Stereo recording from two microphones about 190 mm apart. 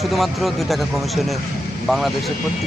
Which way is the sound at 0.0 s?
Centre (ahead or behind).